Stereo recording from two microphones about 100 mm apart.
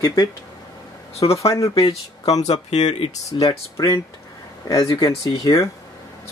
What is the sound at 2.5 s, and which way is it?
Speech, 90° left.